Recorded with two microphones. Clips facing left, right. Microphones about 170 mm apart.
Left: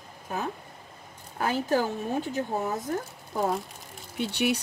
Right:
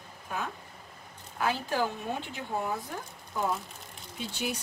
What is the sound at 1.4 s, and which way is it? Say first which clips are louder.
Speech: left 4 dB; 45° left (ahead or behind).